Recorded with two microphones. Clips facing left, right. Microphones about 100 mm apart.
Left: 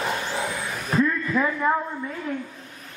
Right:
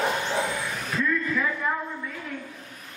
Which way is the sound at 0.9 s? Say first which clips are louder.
Left 5 dB; 35° left (ahead or behind).